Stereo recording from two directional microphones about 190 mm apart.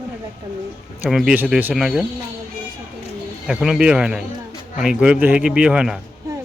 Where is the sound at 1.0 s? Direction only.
5° right (ahead or behind).